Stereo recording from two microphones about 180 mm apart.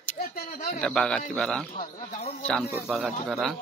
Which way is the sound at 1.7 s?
40° left (ahead or behind).